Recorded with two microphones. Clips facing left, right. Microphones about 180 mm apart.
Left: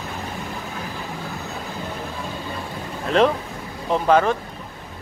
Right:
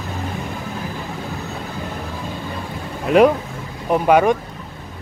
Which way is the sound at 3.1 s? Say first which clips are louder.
Right 5 dB; 10° right (ahead or behind).